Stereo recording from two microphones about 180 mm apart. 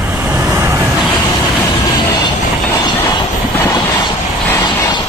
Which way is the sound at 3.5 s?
15° left (ahead or behind).